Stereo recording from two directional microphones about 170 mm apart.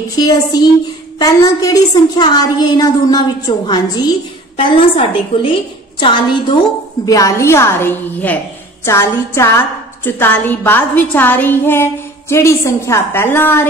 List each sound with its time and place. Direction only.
0.2 s a woman's voice: 25° left (ahead or behind)